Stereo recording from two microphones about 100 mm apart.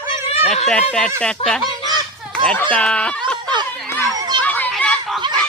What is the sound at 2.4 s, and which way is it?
Speech, 10° left (ahead or behind).